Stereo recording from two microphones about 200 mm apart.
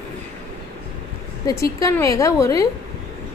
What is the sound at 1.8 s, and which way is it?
Speech, 15° left (ahead or behind).